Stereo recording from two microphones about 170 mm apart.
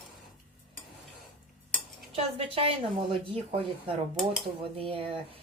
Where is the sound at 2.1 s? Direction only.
35° right (ahead or behind).